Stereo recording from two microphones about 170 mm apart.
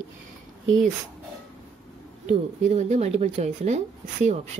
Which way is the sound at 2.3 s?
45° right (ahead or behind).